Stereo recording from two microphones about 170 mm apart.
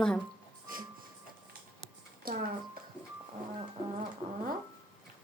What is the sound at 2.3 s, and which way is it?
Speech, 60° right (ahead or behind).